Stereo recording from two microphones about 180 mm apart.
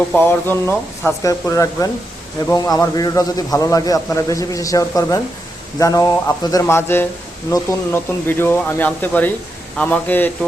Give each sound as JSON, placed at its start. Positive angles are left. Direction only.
{"t": 0.1, "sound": "a man's voice", "side_deg": 10}